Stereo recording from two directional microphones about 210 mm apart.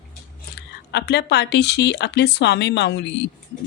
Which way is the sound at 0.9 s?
50° left (ahead or behind).